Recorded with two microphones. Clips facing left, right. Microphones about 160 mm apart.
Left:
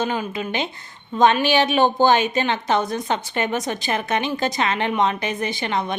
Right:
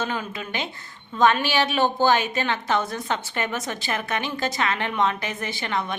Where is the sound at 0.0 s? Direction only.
15° left (ahead or behind).